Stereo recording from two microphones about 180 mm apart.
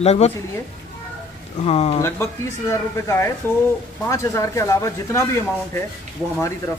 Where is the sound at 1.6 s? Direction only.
35° left (ahead or behind).